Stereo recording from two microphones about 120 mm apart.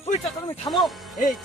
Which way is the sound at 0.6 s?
Centre (ahead or behind).